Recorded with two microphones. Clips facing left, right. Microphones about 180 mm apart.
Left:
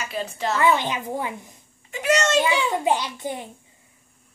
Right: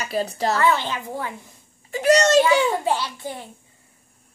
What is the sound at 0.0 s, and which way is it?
Speech, 40° right (ahead or behind).